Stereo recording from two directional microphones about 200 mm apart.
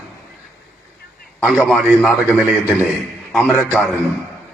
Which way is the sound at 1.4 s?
Centre (ahead or behind).